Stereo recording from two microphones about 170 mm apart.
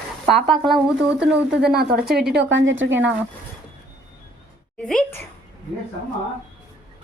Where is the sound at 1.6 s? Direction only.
70° right (ahead or behind); by 2.9 s 90° right.